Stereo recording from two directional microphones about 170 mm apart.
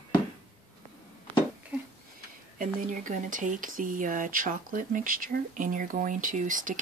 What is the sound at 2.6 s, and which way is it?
Speech, 50° right (ahead or behind).